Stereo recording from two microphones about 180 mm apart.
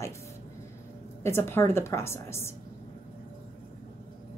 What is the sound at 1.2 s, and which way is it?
A woman's voice, 15° left (ahead or behind).